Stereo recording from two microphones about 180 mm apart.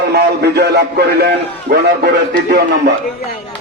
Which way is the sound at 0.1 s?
65° right (ahead or behind).